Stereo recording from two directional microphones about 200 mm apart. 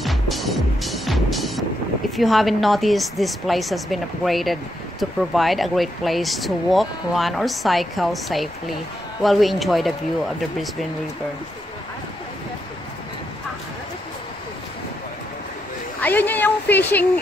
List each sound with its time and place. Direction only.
0.0 s music: centre (ahead or behind)
2.1 s speech: centre (ahead or behind)
16.0 s a woman's voice: 10° left (ahead or behind)